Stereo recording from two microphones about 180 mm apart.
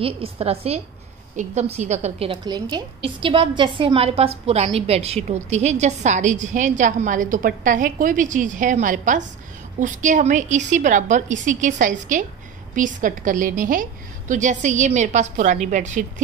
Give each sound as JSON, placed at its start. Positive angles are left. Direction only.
{"t": 0.0, "sound": "a woman's voice", "side_deg": -30}
{"t": 2.4, "sound": "a woman's voice", "side_deg": -25}